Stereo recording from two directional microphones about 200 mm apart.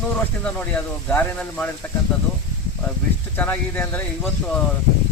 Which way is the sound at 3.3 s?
5° left (ahead or behind).